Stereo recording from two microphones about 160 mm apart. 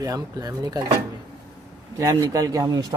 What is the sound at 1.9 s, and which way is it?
Speech, 20° right (ahead or behind).